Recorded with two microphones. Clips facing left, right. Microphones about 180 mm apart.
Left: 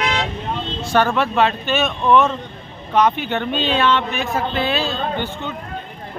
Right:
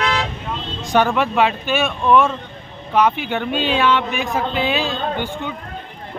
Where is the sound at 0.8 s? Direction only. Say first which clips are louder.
Right 1 dB; 15° right (ahead or behind).